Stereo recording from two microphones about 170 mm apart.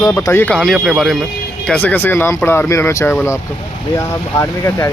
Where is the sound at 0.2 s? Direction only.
15° left (ahead or behind).